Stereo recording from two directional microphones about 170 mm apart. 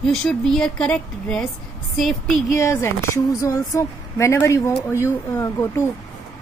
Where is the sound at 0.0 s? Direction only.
5° left (ahead or behind).